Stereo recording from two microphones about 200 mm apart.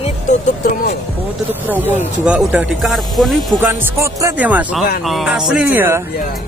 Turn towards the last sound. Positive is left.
turn(degrees=-10)  # may be behind; listen again after turning